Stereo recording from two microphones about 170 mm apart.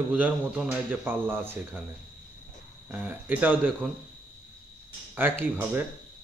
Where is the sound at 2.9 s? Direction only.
10° right (ahead or behind).